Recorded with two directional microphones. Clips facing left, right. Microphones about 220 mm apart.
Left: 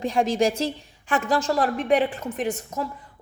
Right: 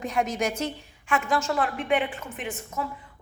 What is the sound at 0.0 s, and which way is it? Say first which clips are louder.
A woman's voice: left 5 dB; 30° left (ahead or behind).